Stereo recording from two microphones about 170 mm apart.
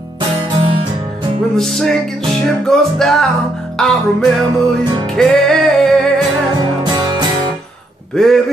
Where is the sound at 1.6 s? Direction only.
5° left (ahead or behind).